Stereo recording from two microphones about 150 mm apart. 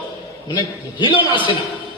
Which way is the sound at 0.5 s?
30° left (ahead or behind).